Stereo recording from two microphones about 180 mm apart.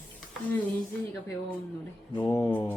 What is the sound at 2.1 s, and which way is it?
Speech, 20° left (ahead or behind).